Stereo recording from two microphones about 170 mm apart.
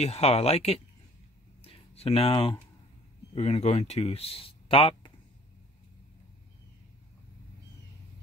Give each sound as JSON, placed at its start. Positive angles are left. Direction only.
{"t": 0.0, "sound": "speech", "side_deg": 40}
{"t": 1.6, "sound": "a sound", "side_deg": 35}
{"t": 3.3, "sound": "speech", "side_deg": 40}